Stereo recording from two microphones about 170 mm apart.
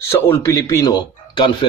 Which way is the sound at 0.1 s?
15° left (ahead or behind).